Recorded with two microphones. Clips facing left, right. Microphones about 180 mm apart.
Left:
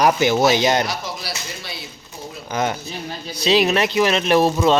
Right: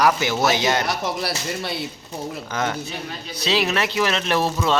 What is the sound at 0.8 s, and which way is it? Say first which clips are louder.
Speech: right 3 dB; 65° right (ahead or behind).